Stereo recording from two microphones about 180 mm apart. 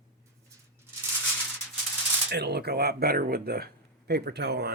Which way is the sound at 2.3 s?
65° right (ahead or behind).